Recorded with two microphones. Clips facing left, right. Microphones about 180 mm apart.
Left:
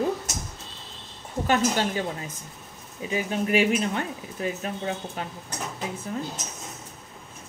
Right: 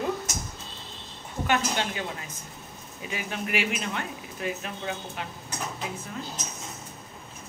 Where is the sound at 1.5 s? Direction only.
35° left (ahead or behind).